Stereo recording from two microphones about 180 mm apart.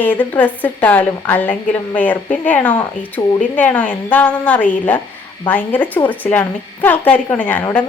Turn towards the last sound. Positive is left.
turn(degrees=10)  # may be behind; listen again after turning